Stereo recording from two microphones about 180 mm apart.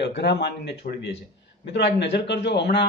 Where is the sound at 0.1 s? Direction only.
65° left (ahead or behind).